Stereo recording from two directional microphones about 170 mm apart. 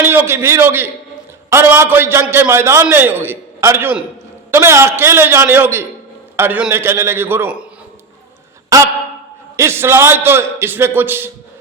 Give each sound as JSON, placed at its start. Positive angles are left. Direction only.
{"t": 0.0, "sound": "a man's voice", "side_deg": -15}
{"t": 8.7, "sound": "a sound", "side_deg": -20}
{"t": 9.6, "sound": "a man's voice", "side_deg": -15}